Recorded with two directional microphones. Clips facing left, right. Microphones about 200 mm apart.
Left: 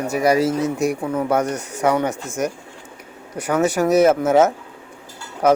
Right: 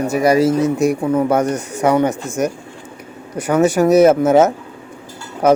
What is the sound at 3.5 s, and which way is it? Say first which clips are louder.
Speech: right 5 dB; 25° right (ahead or behind).